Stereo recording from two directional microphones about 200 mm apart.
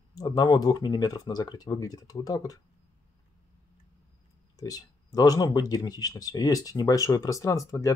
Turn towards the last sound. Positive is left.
turn(degrees=15)  # may be behind; listen again after turning